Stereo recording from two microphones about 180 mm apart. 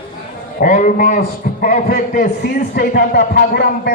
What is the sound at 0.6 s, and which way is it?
A man's voice, 50° left (ahead or behind).